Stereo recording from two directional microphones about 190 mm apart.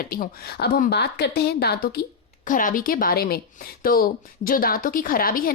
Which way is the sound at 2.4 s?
45° left (ahead or behind).